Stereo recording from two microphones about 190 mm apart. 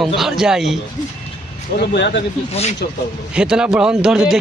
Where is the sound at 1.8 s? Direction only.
60° left (ahead or behind).